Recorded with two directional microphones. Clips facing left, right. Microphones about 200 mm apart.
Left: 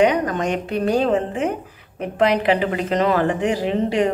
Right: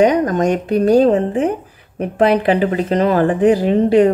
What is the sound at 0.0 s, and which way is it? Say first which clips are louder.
Speech: right 5 dB; 40° right (ahead or behind).